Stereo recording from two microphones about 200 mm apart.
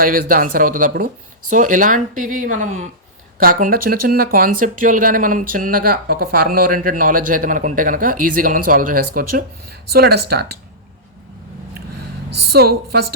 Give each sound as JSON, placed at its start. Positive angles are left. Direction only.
{"t": 0.0, "sound": "speech", "side_deg": -45}
{"t": 12.5, "sound": "speech", "side_deg": -50}